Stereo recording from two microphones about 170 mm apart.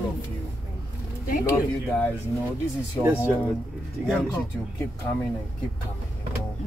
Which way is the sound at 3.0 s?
10° right (ahead or behind).